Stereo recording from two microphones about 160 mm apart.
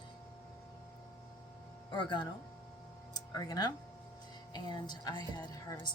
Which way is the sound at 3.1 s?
25° left (ahead or behind).